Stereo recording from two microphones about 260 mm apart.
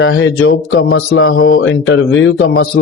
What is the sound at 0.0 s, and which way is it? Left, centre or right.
A man's voice, left.